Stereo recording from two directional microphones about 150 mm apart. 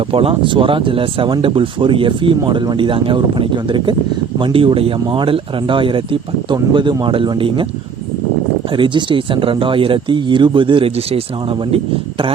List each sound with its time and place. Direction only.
0.1 s speech: 40° right (ahead or behind)
8.7 s speech: 35° right (ahead or behind)